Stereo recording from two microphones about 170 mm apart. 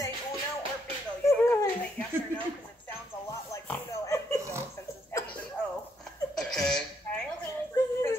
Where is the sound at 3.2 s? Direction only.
15° left (ahead or behind).